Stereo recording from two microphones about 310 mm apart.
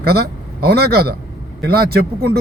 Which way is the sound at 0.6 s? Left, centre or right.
Right.